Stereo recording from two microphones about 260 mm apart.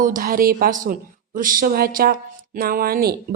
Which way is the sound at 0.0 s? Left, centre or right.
Right.